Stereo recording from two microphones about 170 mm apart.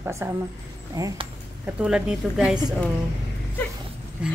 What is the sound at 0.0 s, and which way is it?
Speech, 15° right (ahead or behind).